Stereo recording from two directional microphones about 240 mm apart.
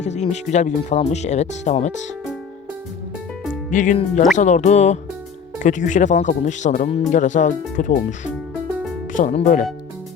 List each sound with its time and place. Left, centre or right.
0.0 s speech: left
3.7 s speech: left